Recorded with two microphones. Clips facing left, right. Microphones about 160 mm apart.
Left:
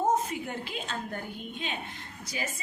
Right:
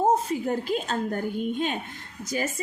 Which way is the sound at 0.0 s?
35° right (ahead or behind).